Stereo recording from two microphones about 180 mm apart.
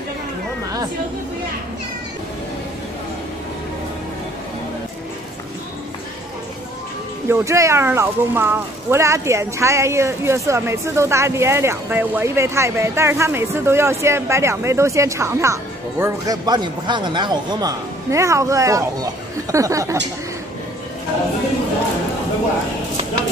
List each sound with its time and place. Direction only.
7.2 s speech: 15° right (ahead or behind)